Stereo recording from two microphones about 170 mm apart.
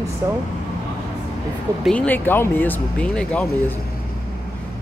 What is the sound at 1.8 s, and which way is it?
Speech, 10° left (ahead or behind).